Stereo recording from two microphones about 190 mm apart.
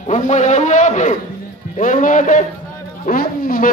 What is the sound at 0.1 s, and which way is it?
A man's voice, 40° left (ahead or behind).